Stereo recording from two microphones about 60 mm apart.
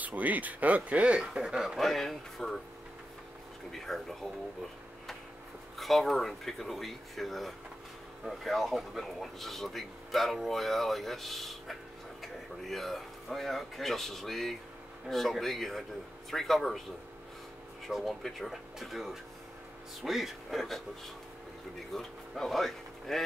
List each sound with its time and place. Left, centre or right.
0.0 s speech: right
1.4 s speech: centre
3.7 s speech: centre
5.8 s speech: centre
17.8 s speech: centre